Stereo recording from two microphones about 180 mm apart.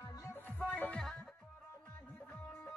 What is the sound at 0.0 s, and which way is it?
Music, 20° left (ahead or behind).